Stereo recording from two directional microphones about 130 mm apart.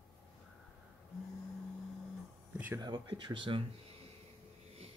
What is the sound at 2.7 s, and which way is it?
Speech, 35° right (ahead or behind).